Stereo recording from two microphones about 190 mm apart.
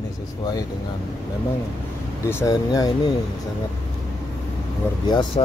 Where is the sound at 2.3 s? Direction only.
15° left (ahead or behind).